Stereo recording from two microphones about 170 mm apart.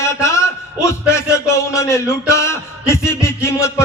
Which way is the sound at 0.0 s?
15° left (ahead or behind).